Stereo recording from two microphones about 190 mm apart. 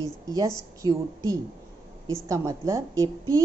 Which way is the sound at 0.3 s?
20° right (ahead or behind).